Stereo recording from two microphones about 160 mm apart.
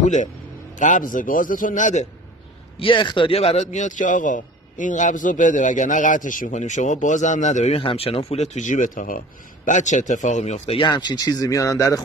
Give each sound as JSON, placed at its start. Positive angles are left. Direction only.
{"t": 0.0, "sound": "a man's voice", "side_deg": 50}
{"t": 2.8, "sound": "speech", "side_deg": 30}
{"t": 3.7, "sound": "a man's voice", "side_deg": 50}
{"t": 10.8, "sound": "speech", "side_deg": 25}